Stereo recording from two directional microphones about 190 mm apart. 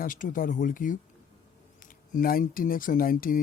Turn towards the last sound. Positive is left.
turn(degrees=45)  # may be behind; listen again after turning